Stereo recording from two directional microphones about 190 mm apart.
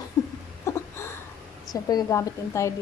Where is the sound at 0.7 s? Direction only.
15° left (ahead or behind).